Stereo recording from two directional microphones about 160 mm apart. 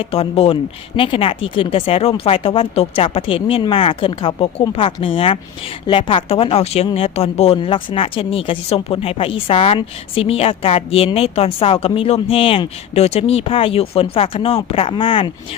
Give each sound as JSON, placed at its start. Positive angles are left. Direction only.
{"t": 0.0, "sound": "speech", "side_deg": 35}